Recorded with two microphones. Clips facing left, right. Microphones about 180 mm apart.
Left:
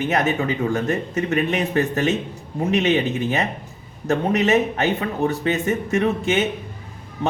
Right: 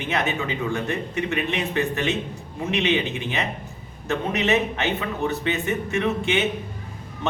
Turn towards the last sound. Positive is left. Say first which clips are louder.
# left 3 dB
turn(degrees=40)  # may be behind; listen again after turning